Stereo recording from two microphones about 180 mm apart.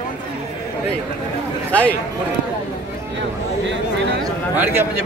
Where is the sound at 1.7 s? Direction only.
10° left (ahead or behind).